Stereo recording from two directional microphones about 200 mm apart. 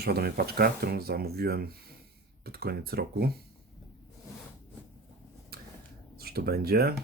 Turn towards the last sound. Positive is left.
turn(degrees=-50)  # may be behind; listen again after turning